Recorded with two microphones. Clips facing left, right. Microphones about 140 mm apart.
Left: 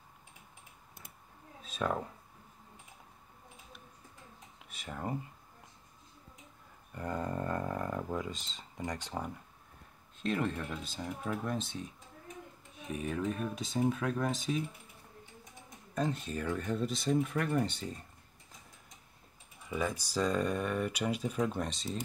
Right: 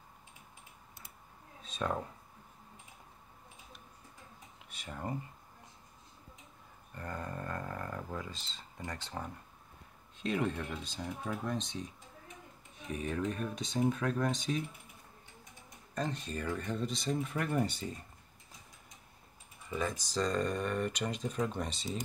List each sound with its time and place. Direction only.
1.6 s a sound: 5° left (ahead or behind)
4.6 s a sound: centre (ahead or behind)
6.9 s speech: 20° left (ahead or behind)
10.1 s speech: centre (ahead or behind)
15.9 s speech: 5° left (ahead or behind)
19.7 s speech: 5° left (ahead or behind)